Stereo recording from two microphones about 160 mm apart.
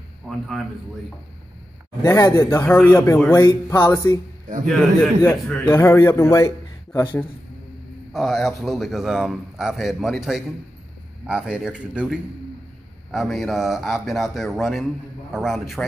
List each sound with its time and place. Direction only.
0.3 s a man's voice: centre (ahead or behind)
2.0 s a man's voice: 20° left (ahead or behind)
4.6 s a man's voice: centre (ahead or behind)
5.6 s a man's voice: 15° left (ahead or behind)
8.1 s a man's voice: centre (ahead or behind)